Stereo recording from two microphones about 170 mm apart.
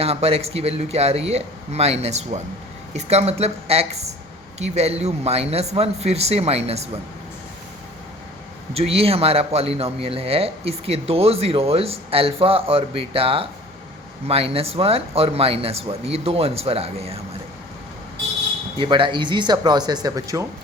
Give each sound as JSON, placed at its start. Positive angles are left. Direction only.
{"t": 0.0, "sound": "speech", "side_deg": -35}
{"t": 8.7, "sound": "speech", "side_deg": -35}
{"t": 18.8, "sound": "speech", "side_deg": -30}